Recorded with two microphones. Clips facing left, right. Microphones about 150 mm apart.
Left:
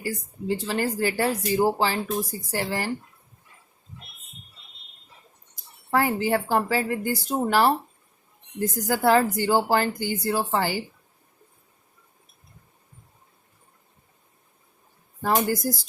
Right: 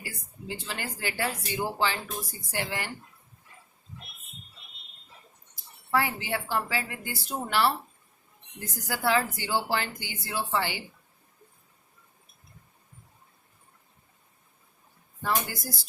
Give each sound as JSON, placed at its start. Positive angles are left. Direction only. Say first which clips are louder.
{"t": 0.0, "sound": "speech", "louder": "left 11 dB", "side_deg": 40}
{"t": 5.9, "sound": "speech", "louder": "left 6 dB", "side_deg": 45}
{"t": 15.2, "sound": "speech", "louder": "left 7 dB", "side_deg": 45}